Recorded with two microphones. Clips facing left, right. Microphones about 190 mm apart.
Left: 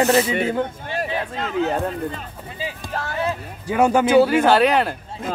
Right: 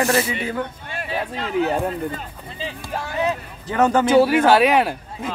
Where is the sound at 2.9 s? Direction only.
15° right (ahead or behind).